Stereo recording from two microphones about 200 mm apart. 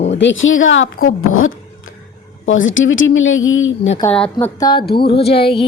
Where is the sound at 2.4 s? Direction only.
75° left (ahead or behind).